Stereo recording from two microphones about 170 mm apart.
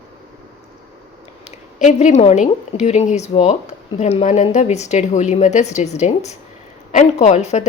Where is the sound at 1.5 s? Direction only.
40° left (ahead or behind).